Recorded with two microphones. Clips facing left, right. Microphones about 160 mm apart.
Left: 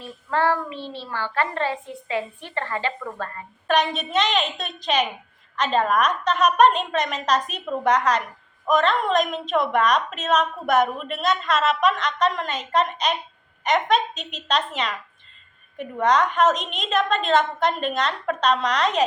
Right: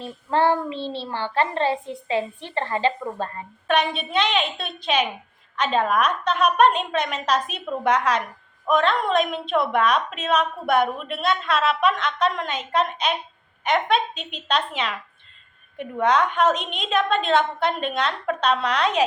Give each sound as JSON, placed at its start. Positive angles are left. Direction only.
{"t": 0.0, "sound": "a child's voice", "side_deg": -25}
{"t": 3.7, "sound": "a woman's voice", "side_deg": 0}